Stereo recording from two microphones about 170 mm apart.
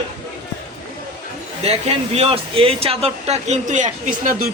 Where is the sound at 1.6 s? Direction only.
35° right (ahead or behind).